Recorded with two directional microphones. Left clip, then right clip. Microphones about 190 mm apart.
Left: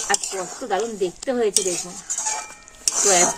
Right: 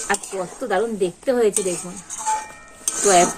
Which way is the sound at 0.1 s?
15° left (ahead or behind).